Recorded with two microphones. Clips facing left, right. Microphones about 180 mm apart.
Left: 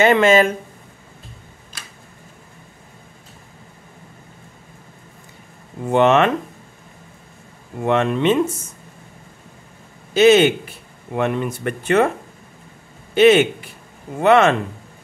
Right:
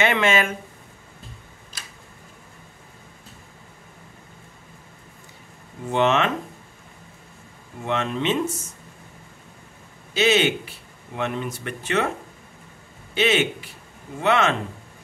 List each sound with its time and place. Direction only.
0.0 s speech: 40° left (ahead or behind)
5.9 s speech: 55° left (ahead or behind)
7.8 s speech: 55° left (ahead or behind)
10.1 s speech: 50° left (ahead or behind)
13.1 s speech: 50° left (ahead or behind)